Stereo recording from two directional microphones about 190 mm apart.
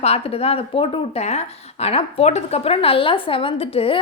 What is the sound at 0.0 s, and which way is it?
Speech, 35° left (ahead or behind).